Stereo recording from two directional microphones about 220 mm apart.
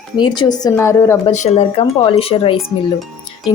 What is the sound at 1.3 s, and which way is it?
Speech, 30° left (ahead or behind).